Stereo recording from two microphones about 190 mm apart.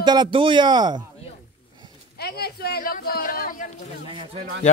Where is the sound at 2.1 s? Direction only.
55° left (ahead or behind).